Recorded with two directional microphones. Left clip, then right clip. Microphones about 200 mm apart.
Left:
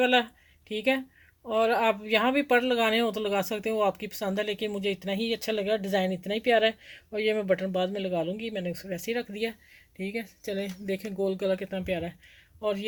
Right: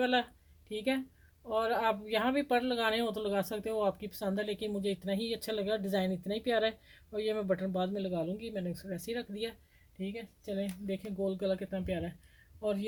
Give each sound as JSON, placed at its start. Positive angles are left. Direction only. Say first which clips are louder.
{"t": 0.0, "sound": "speech", "louder": "left 7 dB", "side_deg": 25}